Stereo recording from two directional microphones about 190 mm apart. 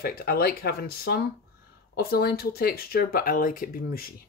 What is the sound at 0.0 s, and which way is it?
Speech, 55° left (ahead or behind).